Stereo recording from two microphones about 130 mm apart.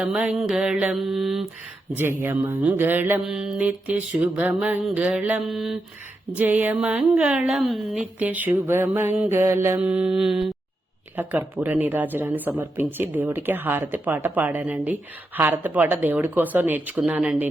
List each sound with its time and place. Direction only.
0.0 s mantra: 5° right (ahead or behind)
2.0 s speech: 15° right (ahead or behind)
3.2 s speech: 5° right (ahead or behind)
6.3 s speech: 15° right (ahead or behind)
8.2 s speech: 10° right (ahead or behind)